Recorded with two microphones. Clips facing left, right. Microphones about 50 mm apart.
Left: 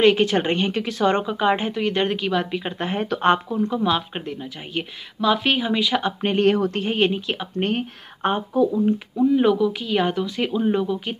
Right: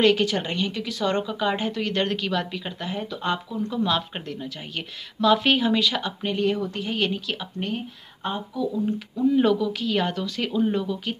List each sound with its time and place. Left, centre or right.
0.0 s speech: left
2.8 s speech: left
3.1 s speech: left
3.4 s speech: left
3.7 s a woman's voice: centre
6.2 s speech: left
7.5 s speech: left
8.8 s a woman's voice: left